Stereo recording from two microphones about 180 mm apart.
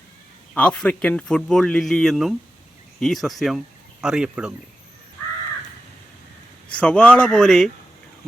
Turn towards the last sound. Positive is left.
turn(degrees=5)  # may be behind; listen again after turning